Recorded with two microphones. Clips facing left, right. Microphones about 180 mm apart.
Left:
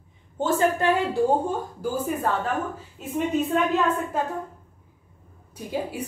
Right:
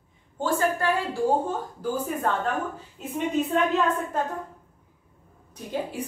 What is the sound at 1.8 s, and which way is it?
Speech, 5° left (ahead or behind).